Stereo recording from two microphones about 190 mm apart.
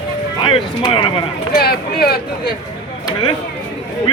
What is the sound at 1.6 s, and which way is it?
Speech, 55° left (ahead or behind).